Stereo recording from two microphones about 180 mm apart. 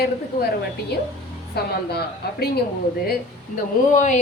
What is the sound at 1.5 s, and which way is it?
Speech, 65° left (ahead or behind).